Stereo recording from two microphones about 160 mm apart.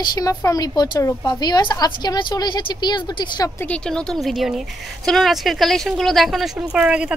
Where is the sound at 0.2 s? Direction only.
20° left (ahead or behind).